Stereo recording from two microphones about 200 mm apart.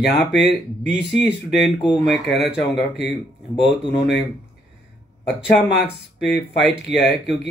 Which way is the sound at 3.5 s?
25° left (ahead or behind).